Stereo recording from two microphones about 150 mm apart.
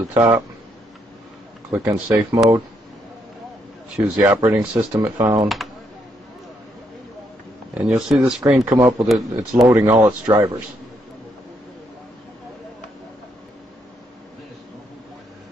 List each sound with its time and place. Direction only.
0.1 s speech: 15° right (ahead or behind)
1.7 s speech: 15° right (ahead or behind)
3.9 s speech: 10° right (ahead or behind)
7.7 s speech: 5° right (ahead or behind)
9.1 s speech: centre (ahead or behind)
9.7 s speech: 15° right (ahead or behind)